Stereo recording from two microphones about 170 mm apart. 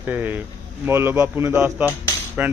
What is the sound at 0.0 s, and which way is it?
Speech, 10° right (ahead or behind).